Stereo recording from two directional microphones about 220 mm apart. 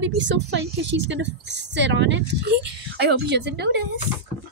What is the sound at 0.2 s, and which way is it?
Speech, 55° right (ahead or behind).